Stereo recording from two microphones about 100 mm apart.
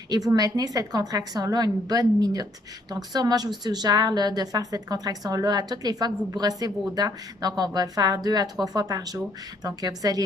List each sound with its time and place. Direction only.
0.1 s speech: 40° right (ahead or behind)